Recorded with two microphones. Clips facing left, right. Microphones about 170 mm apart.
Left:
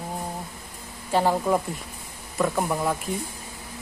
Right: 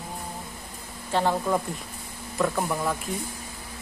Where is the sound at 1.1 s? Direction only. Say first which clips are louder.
Left 2 dB; 10° left (ahead or behind).